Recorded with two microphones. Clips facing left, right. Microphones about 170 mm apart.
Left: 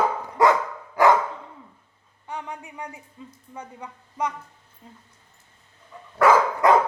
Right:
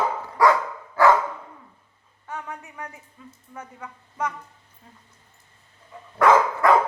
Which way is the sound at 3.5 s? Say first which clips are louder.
Even; 15° left (ahead or behind).